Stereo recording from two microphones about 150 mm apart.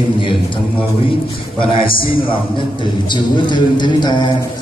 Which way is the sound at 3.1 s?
30° left (ahead or behind).